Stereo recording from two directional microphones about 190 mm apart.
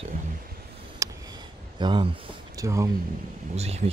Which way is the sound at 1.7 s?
25° right (ahead or behind).